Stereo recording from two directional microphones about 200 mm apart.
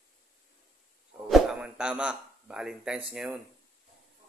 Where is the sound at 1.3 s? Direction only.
5° right (ahead or behind).